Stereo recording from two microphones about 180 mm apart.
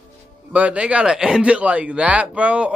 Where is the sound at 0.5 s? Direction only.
5° right (ahead or behind).